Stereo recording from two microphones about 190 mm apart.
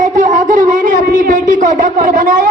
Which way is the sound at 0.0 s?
40° right (ahead or behind).